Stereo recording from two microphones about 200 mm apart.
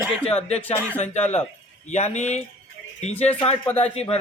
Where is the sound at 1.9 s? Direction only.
35° left (ahead or behind).